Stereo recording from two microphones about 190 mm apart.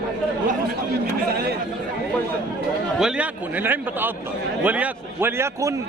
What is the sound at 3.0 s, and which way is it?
Speech, 5° right (ahead or behind).